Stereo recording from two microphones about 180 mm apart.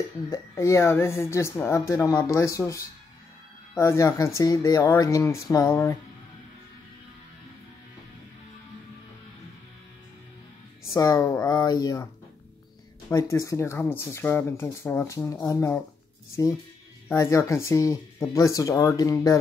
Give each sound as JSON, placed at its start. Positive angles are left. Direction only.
{"t": 0.3, "sound": "speech", "side_deg": 15}
{"t": 11.0, "sound": "speech", "side_deg": 20}
{"t": 13.1, "sound": "speech", "side_deg": 20}
{"t": 17.1, "sound": "speech", "side_deg": 15}